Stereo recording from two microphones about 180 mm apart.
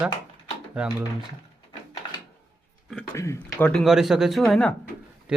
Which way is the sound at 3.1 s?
15° left (ahead or behind).